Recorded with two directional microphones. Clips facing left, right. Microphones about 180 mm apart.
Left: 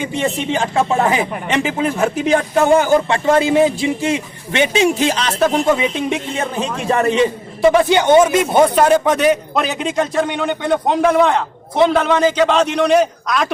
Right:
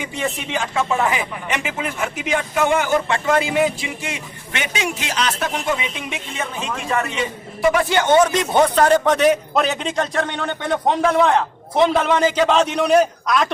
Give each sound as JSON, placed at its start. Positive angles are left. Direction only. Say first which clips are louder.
{"t": 0.0, "sound": "a man's voice", "louder": "left 6 dB", "side_deg": 30}